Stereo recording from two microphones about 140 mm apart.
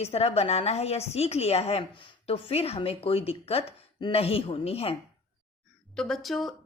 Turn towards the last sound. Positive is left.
turn(degrees=0)  # may be behind; listen again after turning